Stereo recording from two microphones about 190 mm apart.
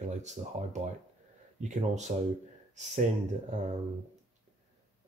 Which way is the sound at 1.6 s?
40° right (ahead or behind).